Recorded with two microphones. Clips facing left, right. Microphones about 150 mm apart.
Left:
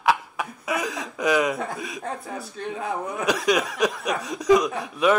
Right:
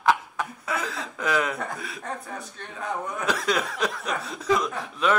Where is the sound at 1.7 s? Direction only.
15° left (ahead or behind).